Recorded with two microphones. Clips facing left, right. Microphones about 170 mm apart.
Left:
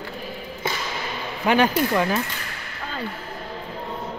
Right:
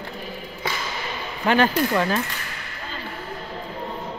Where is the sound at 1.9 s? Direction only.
5° left (ahead or behind).